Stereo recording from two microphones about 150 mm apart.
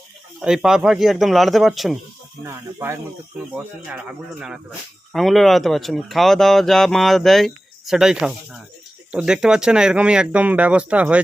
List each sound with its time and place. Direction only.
0.4 s speech: 5° right (ahead or behind)
2.4 s speech: 15° right (ahead or behind)
3.8 s speech: 5° right (ahead or behind)